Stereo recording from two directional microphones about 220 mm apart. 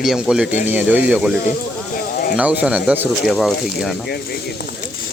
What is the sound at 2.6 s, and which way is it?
Speech, 5° right (ahead or behind).